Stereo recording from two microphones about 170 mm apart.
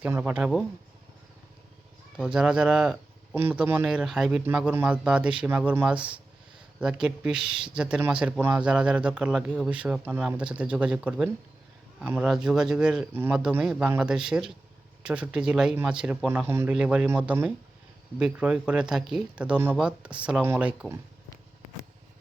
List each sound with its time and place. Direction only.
0.0 s speech: 10° right (ahead or behind)
2.1 s speech: 5° right (ahead or behind)